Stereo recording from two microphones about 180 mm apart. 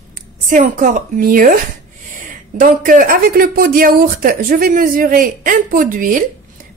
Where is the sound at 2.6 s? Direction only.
45° right (ahead or behind).